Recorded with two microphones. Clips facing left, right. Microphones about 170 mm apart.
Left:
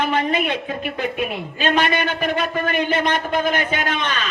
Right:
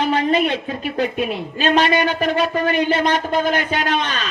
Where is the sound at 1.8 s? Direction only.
50° left (ahead or behind).